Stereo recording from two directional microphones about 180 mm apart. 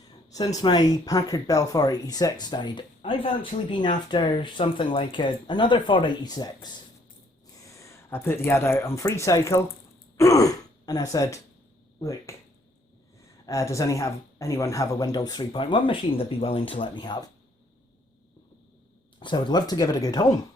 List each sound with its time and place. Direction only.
0.3 s speech: 20° left (ahead or behind)
7.7 s a sound: 15° left (ahead or behind)
8.4 s speech: 15° left (ahead or behind)
13.4 s speech: 15° left (ahead or behind)
19.2 s speech: 25° left (ahead or behind)